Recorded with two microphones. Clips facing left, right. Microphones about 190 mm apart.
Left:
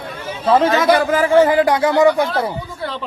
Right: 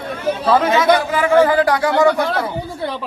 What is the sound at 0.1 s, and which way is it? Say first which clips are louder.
Chatter: right 8 dB; 60° right (ahead or behind).